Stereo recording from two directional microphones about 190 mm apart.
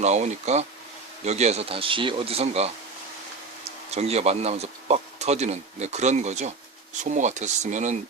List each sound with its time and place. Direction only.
0.0 s speech: 35° right (ahead or behind)